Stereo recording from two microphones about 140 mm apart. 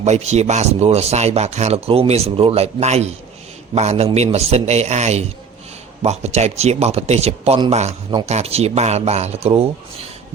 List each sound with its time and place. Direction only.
0.0 s speech: 55° right (ahead or behind)